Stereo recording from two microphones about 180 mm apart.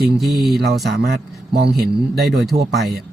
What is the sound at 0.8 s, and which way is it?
Speech, 65° right (ahead or behind).